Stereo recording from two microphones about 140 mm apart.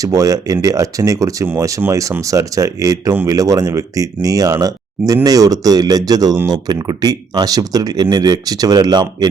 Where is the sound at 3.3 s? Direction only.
25° right (ahead or behind).